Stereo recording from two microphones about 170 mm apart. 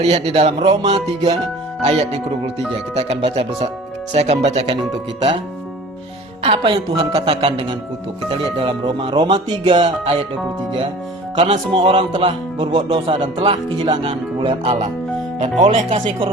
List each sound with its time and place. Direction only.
0.0 s speech: 40° right (ahead or behind)
4.6 s speech: 30° right (ahead or behind)
6.4 s speech: 35° right (ahead or behind)
9.8 s speech: 40° right (ahead or behind)
11.3 s speech: 45° right (ahead or behind)
11.7 s speech: 30° right (ahead or behind)
15.4 s speech: 45° right (ahead or behind)
16.0 s speech: 30° right (ahead or behind)